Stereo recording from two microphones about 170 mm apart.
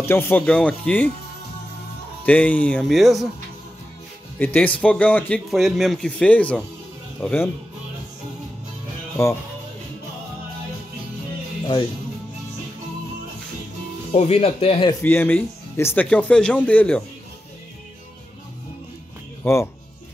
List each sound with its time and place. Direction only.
0.0 s speech: 15° left (ahead or behind)
2.2 s speech: 10° left (ahead or behind)
4.4 s speech: 10° left (ahead or behind)
9.1 s speech: 15° left (ahead or behind)
14.1 s speech: 40° left (ahead or behind)
14.9 s speech: 15° left (ahead or behind)
19.4 s speech: 15° left (ahead or behind)